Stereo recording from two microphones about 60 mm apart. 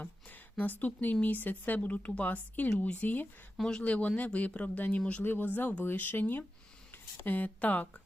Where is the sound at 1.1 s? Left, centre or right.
Left.